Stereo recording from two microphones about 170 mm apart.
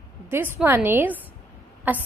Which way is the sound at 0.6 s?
10° right (ahead or behind).